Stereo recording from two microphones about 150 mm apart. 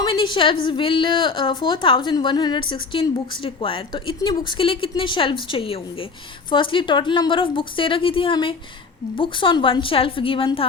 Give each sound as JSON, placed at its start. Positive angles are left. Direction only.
{"t": 0.0, "sound": "a woman's voice", "side_deg": 35}